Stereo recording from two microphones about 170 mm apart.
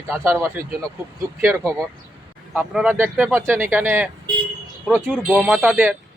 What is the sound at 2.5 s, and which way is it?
A man's voice, 5° right (ahead or behind).